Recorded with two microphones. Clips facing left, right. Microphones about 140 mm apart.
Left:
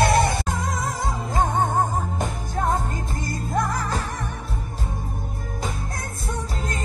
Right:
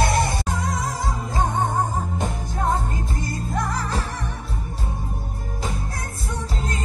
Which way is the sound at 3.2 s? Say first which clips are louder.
Left 3 dB; 45° left (ahead or behind).